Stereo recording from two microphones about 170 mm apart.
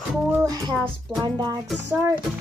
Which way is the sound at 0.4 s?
20° right (ahead or behind).